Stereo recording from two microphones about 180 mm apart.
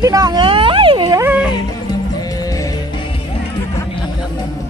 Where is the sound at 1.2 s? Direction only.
5° right (ahead or behind).